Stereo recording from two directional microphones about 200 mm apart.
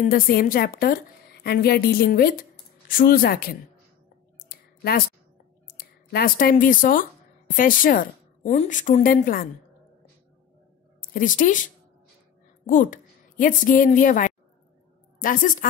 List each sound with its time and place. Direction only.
0.0 s a woman's voice: 45° left (ahead or behind)
4.5 s clicking: 50° left (ahead or behind)
5.8 s a woman's voice: 50° left (ahead or behind)
11.1 s speech: 40° left (ahead or behind)
12.6 s a woman's voice: 40° left (ahead or behind)